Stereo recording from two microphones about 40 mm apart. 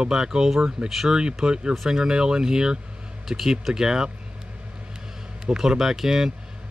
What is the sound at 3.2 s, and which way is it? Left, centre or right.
Speech, centre.